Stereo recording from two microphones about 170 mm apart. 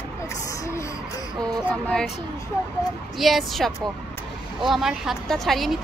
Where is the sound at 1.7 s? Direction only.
5° left (ahead or behind).